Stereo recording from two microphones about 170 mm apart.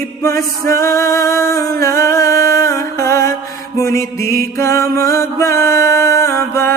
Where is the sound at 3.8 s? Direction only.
20° left (ahead or behind).